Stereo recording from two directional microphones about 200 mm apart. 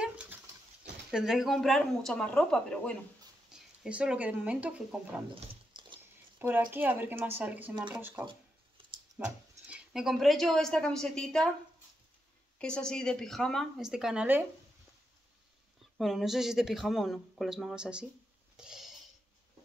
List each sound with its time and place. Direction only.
0.0 s dog: 5° right (ahead or behind)
1.1 s speech: centre (ahead or behind)
5.3 s a sound: 25° right (ahead or behind)
6.3 s speech: 10° right (ahead or behind)
8.3 s a sound: 25° right (ahead or behind)
9.2 s speech: 5° right (ahead or behind)
12.5 s speech: 5° left (ahead or behind)
16.0 s speech: centre (ahead or behind)
18.6 s a sound: centre (ahead or behind)